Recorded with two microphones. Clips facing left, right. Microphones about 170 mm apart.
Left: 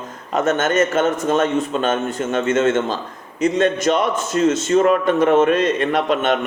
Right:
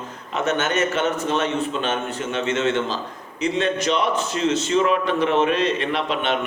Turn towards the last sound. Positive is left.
turn(degrees=45)  # may be behind; listen again after turning